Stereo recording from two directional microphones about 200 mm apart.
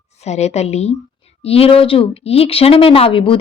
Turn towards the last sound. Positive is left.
turn(degrees=25)  # may be behind; listen again after turning